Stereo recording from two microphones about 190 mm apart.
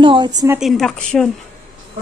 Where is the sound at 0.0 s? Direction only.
25° right (ahead or behind).